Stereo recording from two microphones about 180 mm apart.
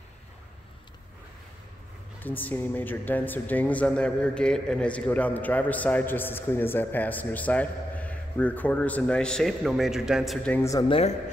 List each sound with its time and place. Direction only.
2.1 s speech: 10° left (ahead or behind)
10.7 s speech: 20° left (ahead or behind)